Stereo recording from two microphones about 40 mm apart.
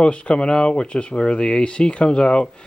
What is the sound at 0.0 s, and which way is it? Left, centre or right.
Speech, left.